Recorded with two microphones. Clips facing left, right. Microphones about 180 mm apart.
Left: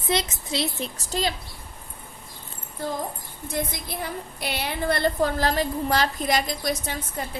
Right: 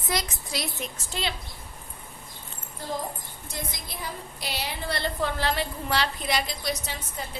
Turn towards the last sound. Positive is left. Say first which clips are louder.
# left 4 dB
turn(degrees=50)  # may be behind; listen again after turning